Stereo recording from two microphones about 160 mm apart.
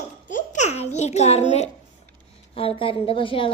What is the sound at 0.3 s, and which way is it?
Babbling, 50° left (ahead or behind).